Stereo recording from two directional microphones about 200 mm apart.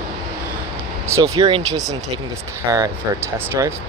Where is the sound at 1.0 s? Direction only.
15° right (ahead or behind).